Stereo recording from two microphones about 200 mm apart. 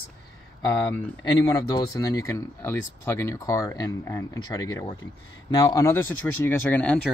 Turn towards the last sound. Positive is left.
turn(degrees=5)  # may be behind; listen again after turning